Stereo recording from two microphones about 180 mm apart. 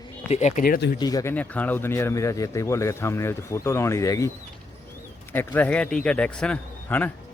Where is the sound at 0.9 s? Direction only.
20° left (ahead or behind).